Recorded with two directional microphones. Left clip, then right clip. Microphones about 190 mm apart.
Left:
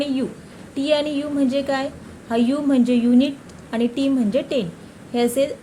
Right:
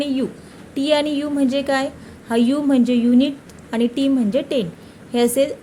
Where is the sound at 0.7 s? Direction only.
15° right (ahead or behind).